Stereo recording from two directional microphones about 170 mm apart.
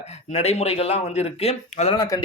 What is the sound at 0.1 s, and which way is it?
Speech, 40° left (ahead or behind).